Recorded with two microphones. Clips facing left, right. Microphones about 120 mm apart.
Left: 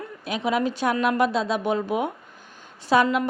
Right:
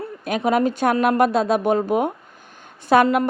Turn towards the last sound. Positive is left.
turn(degrees=-55)  # may be behind; listen again after turning